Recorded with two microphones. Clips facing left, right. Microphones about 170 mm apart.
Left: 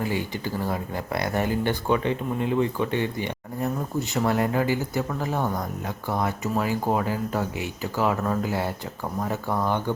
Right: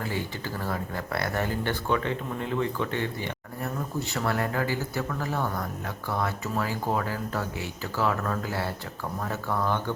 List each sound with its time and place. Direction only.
0.0 s speech: 15° left (ahead or behind)